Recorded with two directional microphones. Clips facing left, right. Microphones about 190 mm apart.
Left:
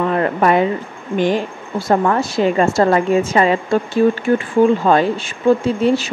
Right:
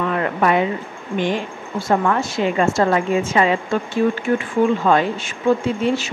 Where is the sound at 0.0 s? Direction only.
35° left (ahead or behind).